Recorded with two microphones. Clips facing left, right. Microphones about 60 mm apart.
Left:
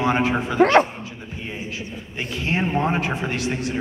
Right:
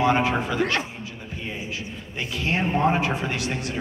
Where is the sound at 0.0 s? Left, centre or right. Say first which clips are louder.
Even; left.